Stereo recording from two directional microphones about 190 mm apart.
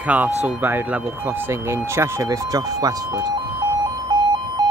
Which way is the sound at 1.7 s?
15° right (ahead or behind).